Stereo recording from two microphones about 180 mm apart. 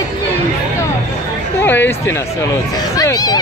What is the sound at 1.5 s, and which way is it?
Chatter, 10° left (ahead or behind).